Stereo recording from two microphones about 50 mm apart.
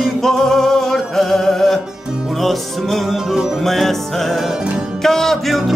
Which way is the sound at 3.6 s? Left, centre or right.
Centre.